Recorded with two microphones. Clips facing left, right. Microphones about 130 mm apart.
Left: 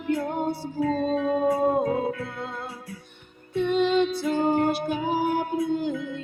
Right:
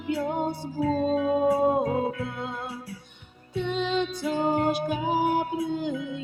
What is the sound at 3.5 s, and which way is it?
Music, 55° left (ahead or behind).